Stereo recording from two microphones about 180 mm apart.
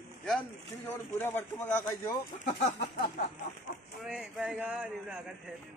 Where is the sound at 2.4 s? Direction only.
40° left (ahead or behind).